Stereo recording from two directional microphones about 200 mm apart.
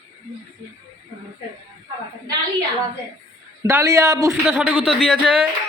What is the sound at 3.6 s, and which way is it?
A man's voice, 15° right (ahead or behind).